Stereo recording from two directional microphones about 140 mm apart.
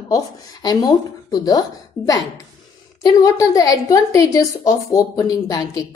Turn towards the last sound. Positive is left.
turn(degrees=25)  # may be behind; listen again after turning